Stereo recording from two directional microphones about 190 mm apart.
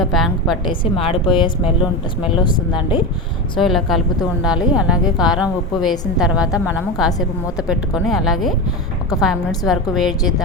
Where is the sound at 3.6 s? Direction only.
Centre (ahead or behind).